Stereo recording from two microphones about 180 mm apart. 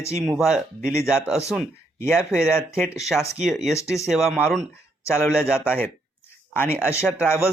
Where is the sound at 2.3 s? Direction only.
15° left (ahead or behind).